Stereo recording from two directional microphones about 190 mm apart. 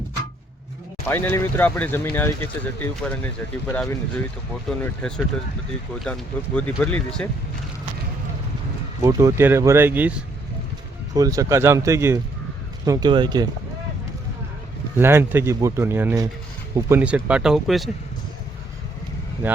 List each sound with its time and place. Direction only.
1.0 s speech: 10° left (ahead or behind)
9.0 s speech: 15° right (ahead or behind)
11.1 s speech: 20° right (ahead or behind)
14.9 s speech: 10° right (ahead or behind)
19.4 s speech: 10° right (ahead or behind)